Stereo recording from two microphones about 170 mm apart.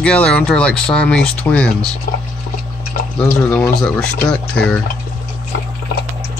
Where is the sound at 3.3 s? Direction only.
10° left (ahead or behind).